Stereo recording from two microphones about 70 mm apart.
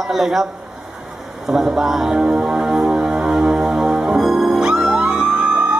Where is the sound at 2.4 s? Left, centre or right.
Centre.